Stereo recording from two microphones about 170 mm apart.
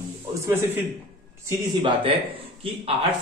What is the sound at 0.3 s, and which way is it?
Speech, 10° right (ahead or behind).